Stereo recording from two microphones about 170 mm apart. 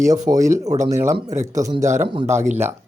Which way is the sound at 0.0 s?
20° right (ahead or behind).